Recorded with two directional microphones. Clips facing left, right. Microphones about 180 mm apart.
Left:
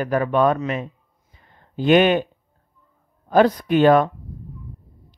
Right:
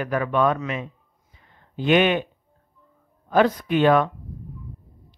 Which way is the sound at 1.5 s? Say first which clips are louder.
Left 4 dB; 40° left (ahead or behind).